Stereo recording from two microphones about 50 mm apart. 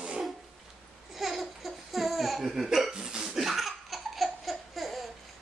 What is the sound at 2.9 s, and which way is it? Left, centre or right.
Hiccup, centre.